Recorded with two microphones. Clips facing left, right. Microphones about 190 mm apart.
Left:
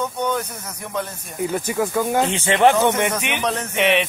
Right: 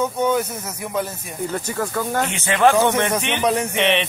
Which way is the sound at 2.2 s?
30° left (ahead or behind).